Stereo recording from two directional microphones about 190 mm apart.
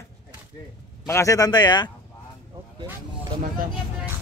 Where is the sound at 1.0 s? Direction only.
15° left (ahead or behind).